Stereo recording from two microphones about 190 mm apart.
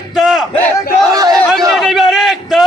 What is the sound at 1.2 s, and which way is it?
Speech, 20° right (ahead or behind).